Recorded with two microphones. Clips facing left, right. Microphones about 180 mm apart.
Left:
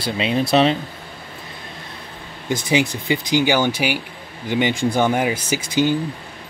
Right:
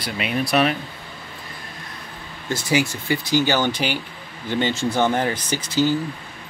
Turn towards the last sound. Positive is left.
turn(degrees=15)  # may be behind; listen again after turning